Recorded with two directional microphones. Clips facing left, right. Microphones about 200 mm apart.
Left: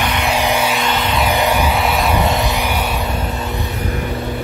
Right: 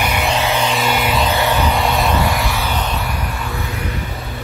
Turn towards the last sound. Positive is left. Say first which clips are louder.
# left 3 dB
turn(degrees=20)  # may be behind; listen again after turning